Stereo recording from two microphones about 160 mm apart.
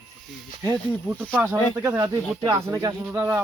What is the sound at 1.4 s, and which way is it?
Speech, 15° right (ahead or behind).